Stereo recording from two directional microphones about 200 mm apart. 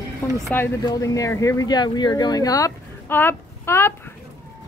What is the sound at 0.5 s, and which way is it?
Speech, 10° left (ahead or behind).